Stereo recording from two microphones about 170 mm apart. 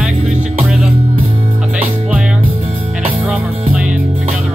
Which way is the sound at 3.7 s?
5° right (ahead or behind).